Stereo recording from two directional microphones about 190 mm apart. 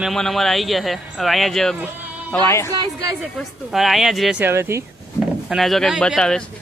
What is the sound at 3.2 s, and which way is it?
A man's voice, centre (ahead or behind).